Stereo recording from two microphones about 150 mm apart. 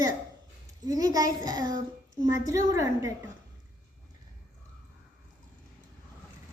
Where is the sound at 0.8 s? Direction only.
25° right (ahead or behind).